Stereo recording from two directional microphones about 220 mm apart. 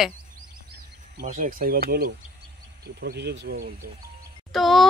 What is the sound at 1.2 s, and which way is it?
Speech, 40° right (ahead or behind).